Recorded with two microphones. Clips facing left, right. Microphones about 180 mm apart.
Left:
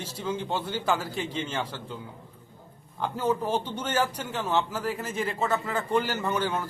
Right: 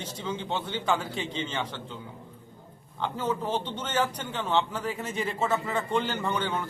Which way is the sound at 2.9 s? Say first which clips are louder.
Left 3 dB; 10° left (ahead or behind).